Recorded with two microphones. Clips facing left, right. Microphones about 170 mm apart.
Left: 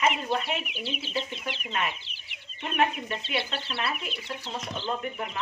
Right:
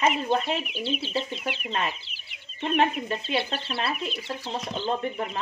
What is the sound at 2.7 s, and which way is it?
Speech, 30° right (ahead or behind).